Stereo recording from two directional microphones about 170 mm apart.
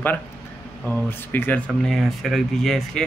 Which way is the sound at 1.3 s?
10° left (ahead or behind).